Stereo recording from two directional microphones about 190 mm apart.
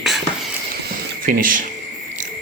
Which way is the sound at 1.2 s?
45° right (ahead or behind).